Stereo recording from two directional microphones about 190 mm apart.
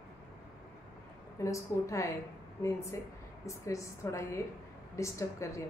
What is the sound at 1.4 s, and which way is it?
Speech, 15° left (ahead or behind).